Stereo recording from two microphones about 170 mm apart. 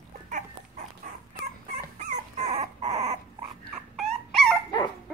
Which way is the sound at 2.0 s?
40° right (ahead or behind).